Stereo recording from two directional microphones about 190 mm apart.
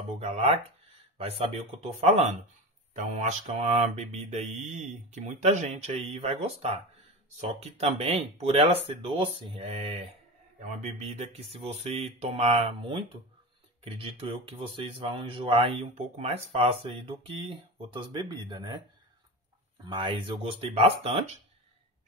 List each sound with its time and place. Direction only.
0.2 s speech: 35° right (ahead or behind)
19.8 s speech: 25° right (ahead or behind)